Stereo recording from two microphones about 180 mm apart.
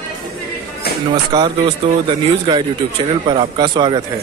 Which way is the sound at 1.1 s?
25° right (ahead or behind).